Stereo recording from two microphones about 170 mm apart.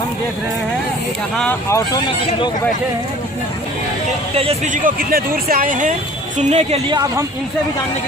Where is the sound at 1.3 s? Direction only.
5° left (ahead or behind).